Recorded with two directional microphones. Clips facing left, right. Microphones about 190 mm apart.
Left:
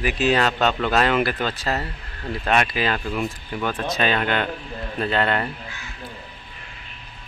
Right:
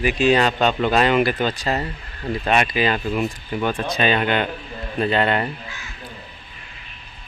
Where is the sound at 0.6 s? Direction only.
5° right (ahead or behind).